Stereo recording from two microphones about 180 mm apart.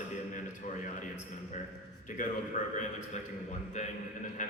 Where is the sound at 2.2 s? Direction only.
45° left (ahead or behind).